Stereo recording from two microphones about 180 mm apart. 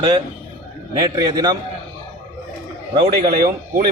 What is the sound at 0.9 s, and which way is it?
Speech, 20° right (ahead or behind).